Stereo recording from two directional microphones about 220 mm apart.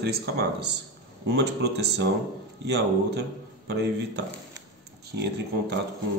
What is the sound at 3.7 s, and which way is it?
Speech, 50° right (ahead or behind).